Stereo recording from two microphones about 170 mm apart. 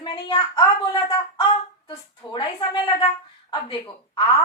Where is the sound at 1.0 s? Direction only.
25° left (ahead or behind).